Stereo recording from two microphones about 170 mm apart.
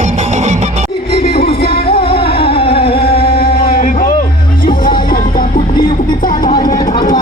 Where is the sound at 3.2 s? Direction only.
65° left (ahead or behind).